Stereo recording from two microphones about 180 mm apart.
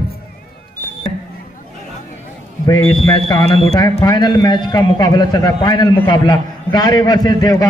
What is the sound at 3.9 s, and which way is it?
A man's voice, 20° left (ahead or behind).